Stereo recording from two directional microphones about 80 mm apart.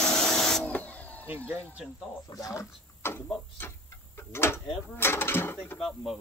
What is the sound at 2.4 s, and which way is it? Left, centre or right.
Speech, left.